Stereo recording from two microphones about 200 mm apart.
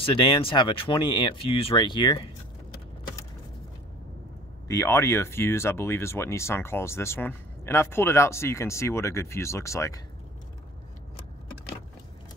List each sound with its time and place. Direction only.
0.0 s speech: 25° left (ahead or behind)
4.6 s speech: 15° left (ahead or behind)